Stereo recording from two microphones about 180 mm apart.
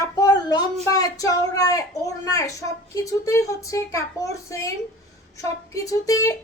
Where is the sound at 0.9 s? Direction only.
20° left (ahead or behind).